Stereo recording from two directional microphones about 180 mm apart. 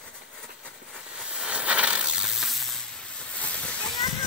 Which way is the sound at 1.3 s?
5° right (ahead or behind).